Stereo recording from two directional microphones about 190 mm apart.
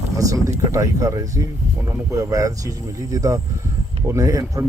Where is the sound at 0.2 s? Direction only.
15° right (ahead or behind).